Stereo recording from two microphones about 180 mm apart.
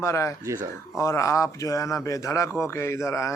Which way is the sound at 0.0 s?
15° left (ahead or behind).